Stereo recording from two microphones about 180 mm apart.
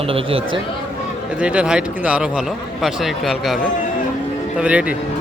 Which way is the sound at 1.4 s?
5° right (ahead or behind).